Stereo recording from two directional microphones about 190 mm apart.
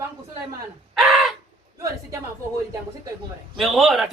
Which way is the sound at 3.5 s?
Centre (ahead or behind).